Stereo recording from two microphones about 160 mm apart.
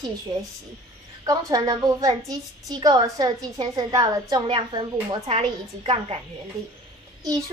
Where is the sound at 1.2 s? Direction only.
25° right (ahead or behind).